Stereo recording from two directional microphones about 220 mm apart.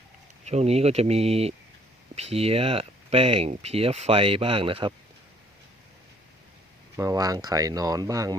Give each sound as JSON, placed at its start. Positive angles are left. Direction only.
{"t": 0.4, "sound": "speech", "side_deg": -30}
{"t": 6.9, "sound": "speech", "side_deg": -15}